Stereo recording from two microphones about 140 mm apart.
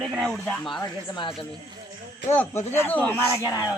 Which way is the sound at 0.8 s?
30° left (ahead or behind).